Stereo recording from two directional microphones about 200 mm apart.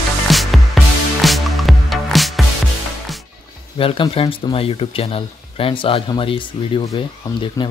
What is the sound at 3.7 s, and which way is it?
Speech, 25° left (ahead or behind).